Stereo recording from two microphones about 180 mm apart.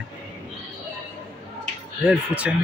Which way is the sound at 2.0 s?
5° right (ahead or behind).